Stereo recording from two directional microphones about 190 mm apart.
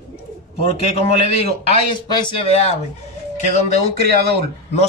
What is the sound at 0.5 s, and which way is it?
Speech, 30° left (ahead or behind).